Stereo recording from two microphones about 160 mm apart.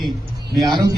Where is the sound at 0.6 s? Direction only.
25° right (ahead or behind).